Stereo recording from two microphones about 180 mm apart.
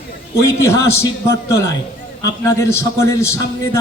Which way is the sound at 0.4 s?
15° left (ahead or behind).